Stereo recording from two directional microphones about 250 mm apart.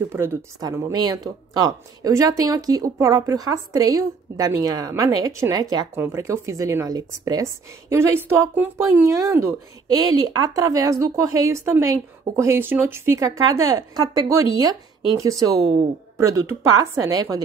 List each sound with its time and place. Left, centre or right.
0.1 s speech: centre
15.6 s a woman's voice: right
16.2 s speech: centre